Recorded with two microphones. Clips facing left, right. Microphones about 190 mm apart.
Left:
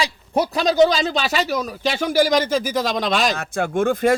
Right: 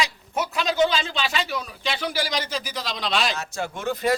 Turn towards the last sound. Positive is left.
turn(degrees=50)  # may be behind; listen again after turning